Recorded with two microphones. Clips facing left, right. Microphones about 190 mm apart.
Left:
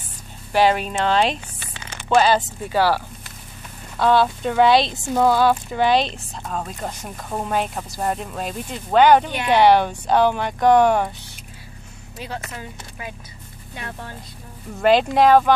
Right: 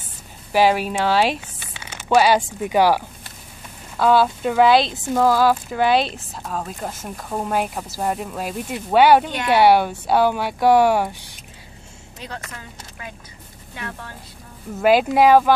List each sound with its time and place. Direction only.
0.5 s speech: 10° right (ahead or behind)
3.9 s speech: 5° right (ahead or behind)
12.2 s speech: 15° left (ahead or behind)
14.8 s speech: 5° right (ahead or behind)